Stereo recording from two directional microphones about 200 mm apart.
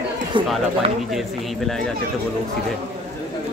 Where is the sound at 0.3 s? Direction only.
25° right (ahead or behind).